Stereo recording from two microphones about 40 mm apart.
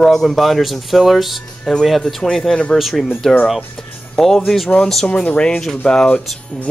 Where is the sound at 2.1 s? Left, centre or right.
Centre.